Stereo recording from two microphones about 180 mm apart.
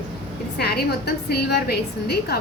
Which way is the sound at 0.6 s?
60° left (ahead or behind).